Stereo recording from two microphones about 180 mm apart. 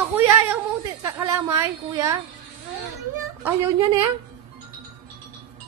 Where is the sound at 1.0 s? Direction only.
15° right (ahead or behind).